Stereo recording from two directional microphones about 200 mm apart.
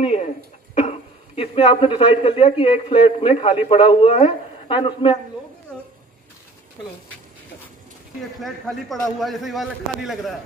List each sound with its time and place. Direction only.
0.0 s a sound: 30° left (ahead or behind)
0.7 s speech: 30° left (ahead or behind)
8.4 s a man's voice: centre (ahead or behind)